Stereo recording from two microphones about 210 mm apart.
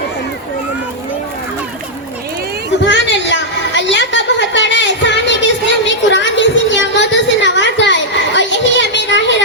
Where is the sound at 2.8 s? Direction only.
60° left (ahead or behind).